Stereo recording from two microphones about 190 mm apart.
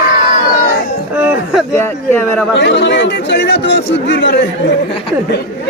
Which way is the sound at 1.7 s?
10° left (ahead or behind).